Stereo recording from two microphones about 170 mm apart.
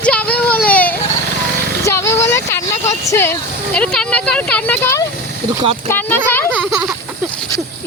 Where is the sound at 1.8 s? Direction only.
15° left (ahead or behind).